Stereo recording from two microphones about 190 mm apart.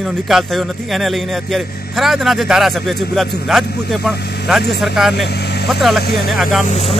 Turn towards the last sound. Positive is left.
turn(degrees=40)  # may be behind; listen again after turning